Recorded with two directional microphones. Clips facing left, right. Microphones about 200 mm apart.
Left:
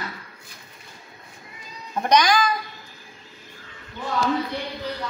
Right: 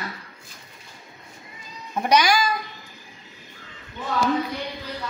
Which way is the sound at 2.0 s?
10° right (ahead or behind).